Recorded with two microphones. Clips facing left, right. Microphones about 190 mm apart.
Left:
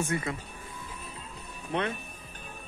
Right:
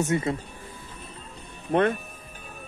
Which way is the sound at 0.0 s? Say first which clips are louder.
Right 6 dB; 25° right (ahead or behind).